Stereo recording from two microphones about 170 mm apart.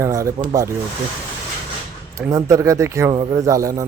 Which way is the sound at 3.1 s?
25° right (ahead or behind).